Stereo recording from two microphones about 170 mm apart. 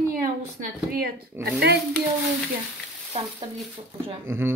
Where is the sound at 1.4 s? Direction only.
75° right (ahead or behind).